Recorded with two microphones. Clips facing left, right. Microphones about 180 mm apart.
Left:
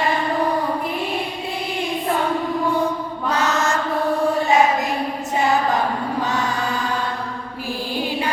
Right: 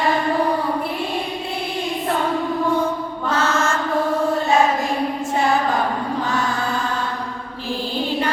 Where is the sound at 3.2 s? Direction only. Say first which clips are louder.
Even; 15° left (ahead or behind).